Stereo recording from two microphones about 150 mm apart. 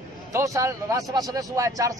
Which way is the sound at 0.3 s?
20° right (ahead or behind).